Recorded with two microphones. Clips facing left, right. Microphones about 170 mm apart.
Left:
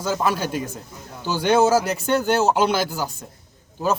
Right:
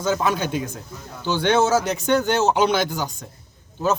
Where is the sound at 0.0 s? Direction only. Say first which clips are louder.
Right 1 dB; 5° left (ahead or behind).